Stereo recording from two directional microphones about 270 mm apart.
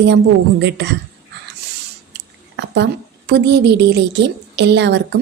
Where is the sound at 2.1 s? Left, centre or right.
Right.